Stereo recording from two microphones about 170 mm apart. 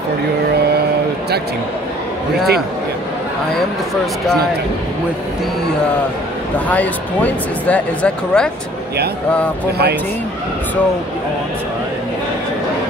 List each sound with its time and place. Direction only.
6.7 s speech: 10° left (ahead or behind)